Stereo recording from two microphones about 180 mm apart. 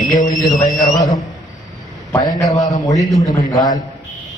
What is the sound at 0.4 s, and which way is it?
Speech, centre (ahead or behind).